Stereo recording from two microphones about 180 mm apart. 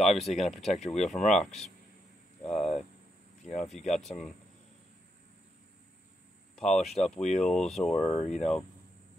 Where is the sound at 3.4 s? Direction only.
40° left (ahead or behind).